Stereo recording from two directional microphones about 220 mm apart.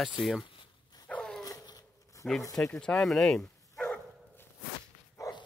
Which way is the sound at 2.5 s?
5° left (ahead or behind).